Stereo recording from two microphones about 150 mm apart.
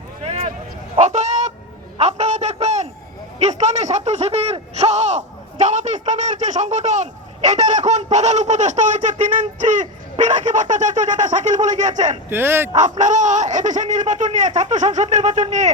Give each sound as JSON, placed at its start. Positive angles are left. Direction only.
{"t": 0.2, "sound": "a sound", "side_deg": -45}
{"t": 0.9, "sound": "fowl", "side_deg": -50}
{"t": 2.0, "sound": "a sound", "side_deg": -45}
{"t": 3.3, "sound": "speech", "side_deg": -50}
{"t": 12.3, "sound": "speech", "side_deg": -15}
{"t": 12.7, "sound": "a man's voice", "side_deg": -55}